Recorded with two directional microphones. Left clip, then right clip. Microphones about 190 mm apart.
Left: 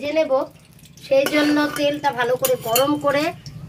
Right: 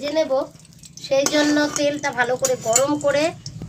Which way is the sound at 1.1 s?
25° left (ahead or behind).